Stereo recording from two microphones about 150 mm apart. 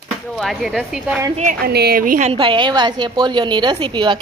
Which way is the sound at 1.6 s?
90° right.